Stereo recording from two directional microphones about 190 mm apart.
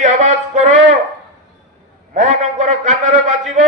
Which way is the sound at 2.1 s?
40° right (ahead or behind).